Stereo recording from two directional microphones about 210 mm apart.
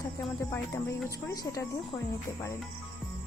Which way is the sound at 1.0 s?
15° left (ahead or behind).